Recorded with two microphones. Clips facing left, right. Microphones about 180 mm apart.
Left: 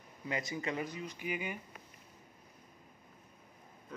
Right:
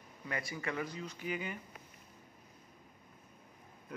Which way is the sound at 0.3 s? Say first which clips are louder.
Left 2 dB; 20° left (ahead or behind).